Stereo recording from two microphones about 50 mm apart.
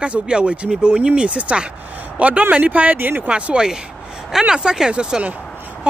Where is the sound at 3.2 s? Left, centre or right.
Right.